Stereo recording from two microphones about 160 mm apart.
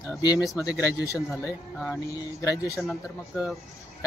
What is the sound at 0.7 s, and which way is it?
Speech, 20° left (ahead or behind).